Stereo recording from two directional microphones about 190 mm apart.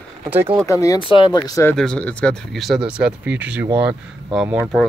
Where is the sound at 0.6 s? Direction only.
15° left (ahead or behind).